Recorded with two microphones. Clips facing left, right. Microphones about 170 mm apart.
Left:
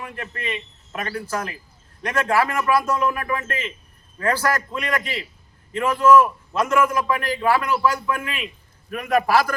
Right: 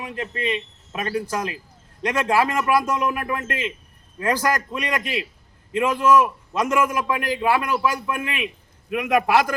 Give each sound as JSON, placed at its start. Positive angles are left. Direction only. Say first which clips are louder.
{"t": 0.0, "sound": "a man's voice", "louder": "right 4 dB", "side_deg": -20}